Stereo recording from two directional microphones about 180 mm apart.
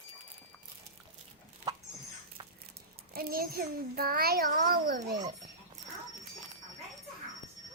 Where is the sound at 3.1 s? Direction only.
55° right (ahead or behind).